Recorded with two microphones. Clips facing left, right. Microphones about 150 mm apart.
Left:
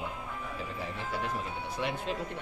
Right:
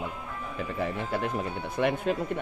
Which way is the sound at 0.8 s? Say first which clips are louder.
Right 7 dB; 60° right (ahead or behind).